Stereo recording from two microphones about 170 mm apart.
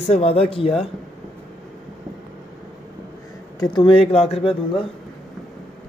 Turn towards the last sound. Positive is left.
turn(degrees=30)  # may be behind; listen again after turning